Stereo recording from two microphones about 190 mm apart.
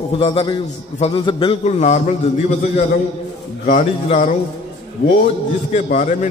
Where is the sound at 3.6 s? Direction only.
40° left (ahead or behind).